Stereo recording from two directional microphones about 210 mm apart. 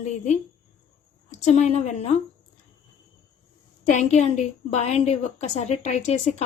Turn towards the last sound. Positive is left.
turn(degrees=30)  # may be behind; listen again after turning